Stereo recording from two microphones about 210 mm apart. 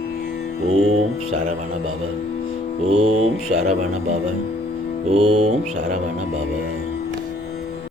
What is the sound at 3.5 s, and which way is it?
Speech, 30° right (ahead or behind).